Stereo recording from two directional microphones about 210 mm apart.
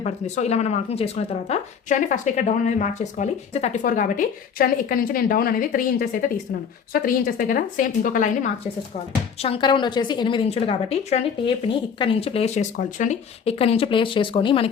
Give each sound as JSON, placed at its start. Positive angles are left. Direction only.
{"t": 0.0, "sound": "speech", "side_deg": 30}
{"t": 9.4, "sound": "a woman's voice", "side_deg": 25}